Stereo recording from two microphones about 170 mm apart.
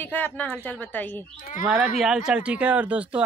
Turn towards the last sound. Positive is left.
turn(degrees=-10)  # may be behind; listen again after turning